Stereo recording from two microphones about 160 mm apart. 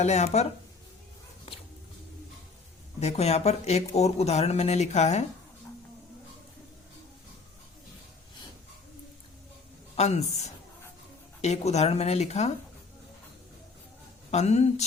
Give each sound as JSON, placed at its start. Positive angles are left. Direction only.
{"t": 0.0, "sound": "speech", "side_deg": 45}
{"t": 3.0, "sound": "speech", "side_deg": 40}
{"t": 9.9, "sound": "speech", "side_deg": 45}
{"t": 14.3, "sound": "speech", "side_deg": 45}